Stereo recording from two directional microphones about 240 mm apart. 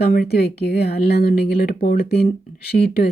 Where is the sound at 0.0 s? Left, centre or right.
Left.